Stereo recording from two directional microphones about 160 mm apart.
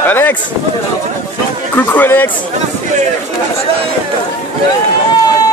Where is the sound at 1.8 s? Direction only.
10° left (ahead or behind).